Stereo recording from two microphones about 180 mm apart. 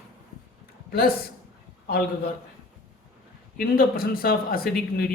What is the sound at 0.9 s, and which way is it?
Speech, 55° left (ahead or behind).